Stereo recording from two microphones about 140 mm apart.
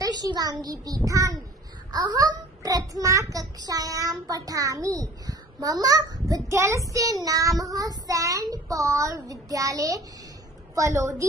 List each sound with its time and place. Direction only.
0.0 s a child's voice: 30° right (ahead or behind)